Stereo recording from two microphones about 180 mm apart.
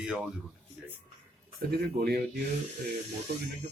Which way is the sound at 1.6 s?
60° right (ahead or behind).